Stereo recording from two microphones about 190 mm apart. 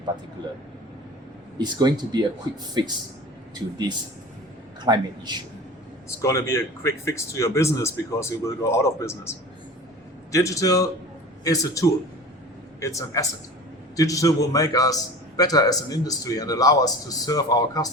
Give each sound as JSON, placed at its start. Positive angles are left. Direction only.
{"t": 1.5, "sound": "speech", "side_deg": -20}
{"t": 6.2, "sound": "a man's voice", "side_deg": 15}
{"t": 10.3, "sound": "a man's voice", "side_deg": 15}